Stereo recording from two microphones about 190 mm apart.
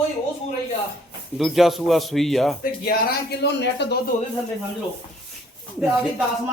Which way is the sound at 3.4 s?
65° left (ahead or behind).